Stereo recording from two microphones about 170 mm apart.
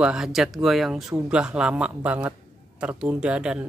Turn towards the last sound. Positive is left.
turn(degrees=-5)  # may be behind; listen again after turning